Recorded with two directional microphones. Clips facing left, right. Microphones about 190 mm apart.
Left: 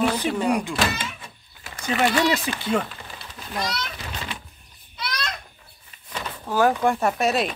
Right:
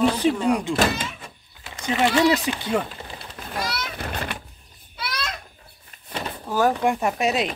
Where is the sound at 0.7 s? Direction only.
25° right (ahead or behind).